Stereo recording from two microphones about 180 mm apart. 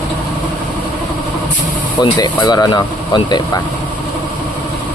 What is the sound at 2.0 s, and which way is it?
Speech, 25° left (ahead or behind).